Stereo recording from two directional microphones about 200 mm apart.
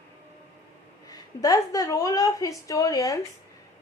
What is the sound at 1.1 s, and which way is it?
A woman's voice, 20° left (ahead or behind).